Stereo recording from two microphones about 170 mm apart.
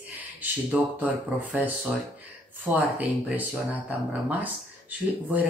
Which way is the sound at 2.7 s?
10° right (ahead or behind).